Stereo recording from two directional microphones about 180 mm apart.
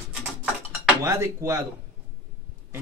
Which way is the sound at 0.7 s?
15° right (ahead or behind).